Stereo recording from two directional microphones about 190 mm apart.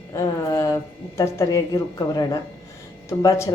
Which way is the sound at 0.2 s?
15° left (ahead or behind).